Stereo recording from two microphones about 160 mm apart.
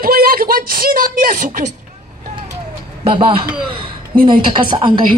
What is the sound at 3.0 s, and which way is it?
Speech, 35° right (ahead or behind).